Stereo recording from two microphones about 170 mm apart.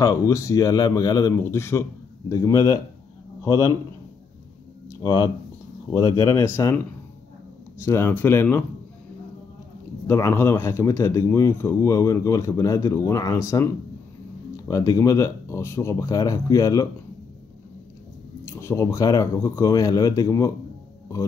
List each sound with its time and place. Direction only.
0.0 s speech: 15° left (ahead or behind)
4.8 s speech: 20° left (ahead or behind)
7.8 s speech: 15° left (ahead or behind)
10.0 s speech: 15° left (ahead or behind)
14.7 s speech: 20° left (ahead or behind)
18.4 s speech: 15° left (ahead or behind)